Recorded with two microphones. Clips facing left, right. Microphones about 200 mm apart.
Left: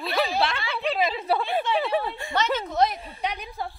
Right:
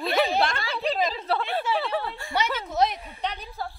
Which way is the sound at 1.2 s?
10° left (ahead or behind).